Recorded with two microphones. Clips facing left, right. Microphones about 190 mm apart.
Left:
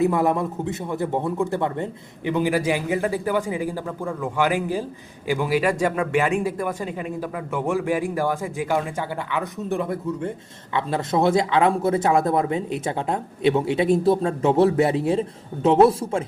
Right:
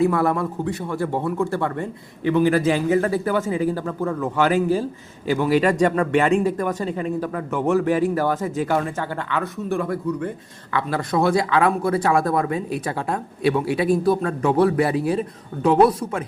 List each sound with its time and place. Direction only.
0.0 s a man's voice: 20° left (ahead or behind)